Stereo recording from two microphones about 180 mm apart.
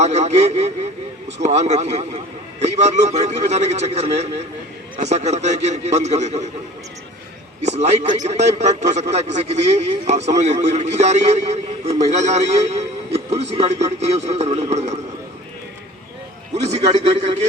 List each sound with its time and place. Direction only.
0.0 s a sound: 40° right (ahead or behind)
1.4 s a man's voice: 40° right (ahead or behind)
7.6 s a man's voice: 40° right (ahead or behind)
16.6 s a man's voice: 35° right (ahead or behind)